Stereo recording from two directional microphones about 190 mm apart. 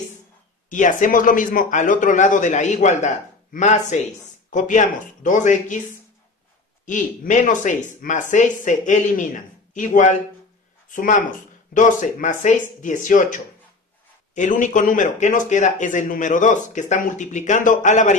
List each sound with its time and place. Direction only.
0.7 s speech: 45° left (ahead or behind)
6.9 s speech: 40° left (ahead or behind)